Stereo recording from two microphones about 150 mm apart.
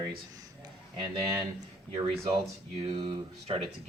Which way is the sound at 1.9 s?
35° right (ahead or behind).